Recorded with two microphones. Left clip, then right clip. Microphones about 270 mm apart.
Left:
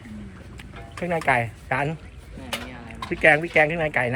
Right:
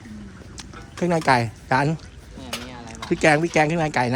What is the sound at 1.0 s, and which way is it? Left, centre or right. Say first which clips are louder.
Speech: right 3 dB; right.